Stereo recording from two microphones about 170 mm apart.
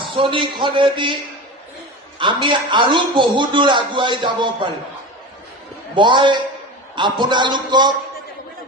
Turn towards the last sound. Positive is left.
turn(degrees=-25)  # may be behind; listen again after turning